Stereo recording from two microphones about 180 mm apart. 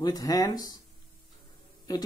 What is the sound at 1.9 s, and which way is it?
Speech, 20° left (ahead or behind).